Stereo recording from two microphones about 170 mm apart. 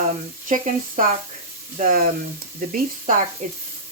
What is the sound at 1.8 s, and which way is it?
Speech, 55° right (ahead or behind).